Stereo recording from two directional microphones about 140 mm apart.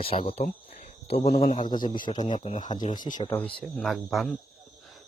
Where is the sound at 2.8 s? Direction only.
65° left (ahead or behind).